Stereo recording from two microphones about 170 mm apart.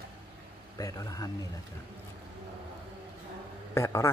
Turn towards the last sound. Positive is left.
turn(degrees=15)  # may be behind; listen again after turning